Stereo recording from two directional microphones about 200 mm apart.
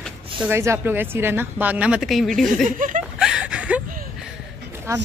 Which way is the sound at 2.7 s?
40° right (ahead or behind).